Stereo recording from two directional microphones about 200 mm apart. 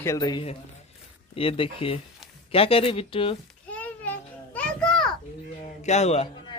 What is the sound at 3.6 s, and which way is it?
Children playing, 5° left (ahead or behind).